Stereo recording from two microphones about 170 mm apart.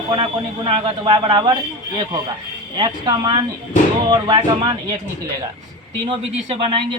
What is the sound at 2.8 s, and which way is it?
Speech, 25° right (ahead or behind).